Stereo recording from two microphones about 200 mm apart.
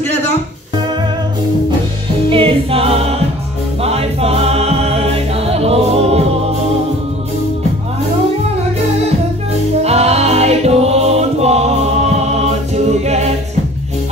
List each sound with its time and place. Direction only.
2.2 s choir: 25° right (ahead or behind)
3.8 s music: 30° right (ahead or behind)
9.8 s music: 30° right (ahead or behind)